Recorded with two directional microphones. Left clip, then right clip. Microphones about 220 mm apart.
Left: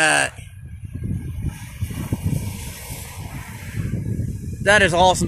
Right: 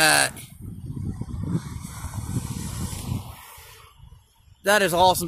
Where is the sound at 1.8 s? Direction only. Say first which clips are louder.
Left 6 dB; 50° left (ahead or behind).